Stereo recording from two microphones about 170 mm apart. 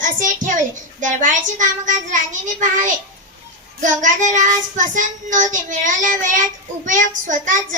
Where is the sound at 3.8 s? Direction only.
50° right (ahead or behind).